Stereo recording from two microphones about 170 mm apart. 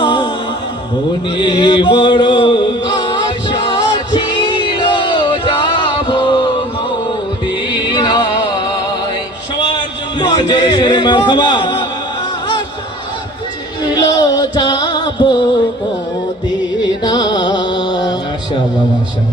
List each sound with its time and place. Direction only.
0.0 s music: 25° left (ahead or behind)
13.9 s music: 25° left (ahead or behind)
17.0 s music: 25° left (ahead or behind)